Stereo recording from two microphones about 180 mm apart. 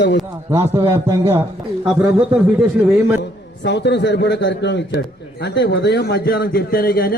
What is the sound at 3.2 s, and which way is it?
A man's voice, 75° left (ahead or behind).